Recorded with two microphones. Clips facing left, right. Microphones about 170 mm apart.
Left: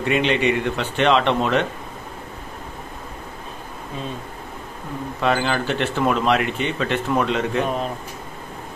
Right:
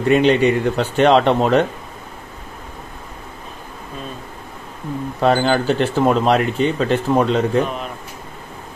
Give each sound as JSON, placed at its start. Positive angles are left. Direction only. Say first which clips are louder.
{"t": 0.1, "sound": "speech", "louder": "right 6 dB", "side_deg": -40}
{"t": 5.2, "sound": "speech", "louder": "right 5 dB", "side_deg": -35}